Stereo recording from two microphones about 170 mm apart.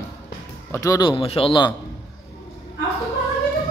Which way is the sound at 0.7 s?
20° left (ahead or behind).